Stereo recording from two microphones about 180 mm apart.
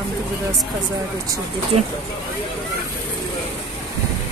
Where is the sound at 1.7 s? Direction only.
35° right (ahead or behind).